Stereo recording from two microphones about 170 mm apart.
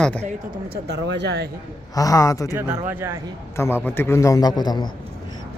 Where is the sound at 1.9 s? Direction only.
20° left (ahead or behind).